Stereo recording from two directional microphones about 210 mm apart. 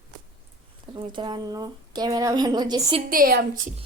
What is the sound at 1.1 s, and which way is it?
A woman's voice, 20° right (ahead or behind).